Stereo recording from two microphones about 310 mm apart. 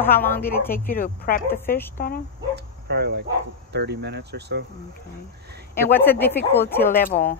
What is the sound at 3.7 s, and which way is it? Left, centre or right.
Speech, right.